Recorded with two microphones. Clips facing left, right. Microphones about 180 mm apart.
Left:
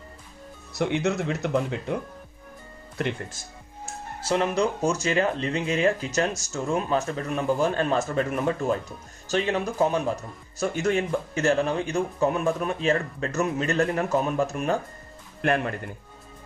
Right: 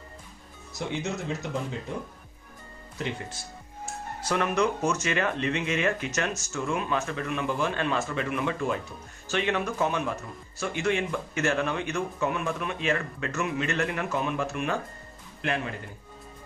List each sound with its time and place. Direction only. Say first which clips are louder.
0.7 s speech: left 7 dB; 65° left (ahead or behind)
3.0 s speech: left 4 dB; 55° left (ahead or behind)
4.3 s speech: left 2 dB; 30° left (ahead or behind)
15.4 s speech: left 6 dB; 50° left (ahead or behind)